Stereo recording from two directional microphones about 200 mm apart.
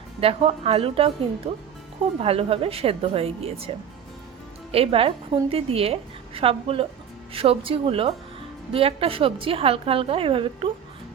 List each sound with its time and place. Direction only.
0.2 s a woman's voice: 30° right (ahead or behind)
2.2 s a woman's voice: 30° right (ahead or behind)
4.7 s a woman's voice: 30° right (ahead or behind)